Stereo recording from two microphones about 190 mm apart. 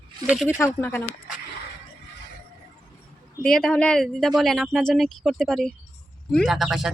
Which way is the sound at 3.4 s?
5° left (ahead or behind).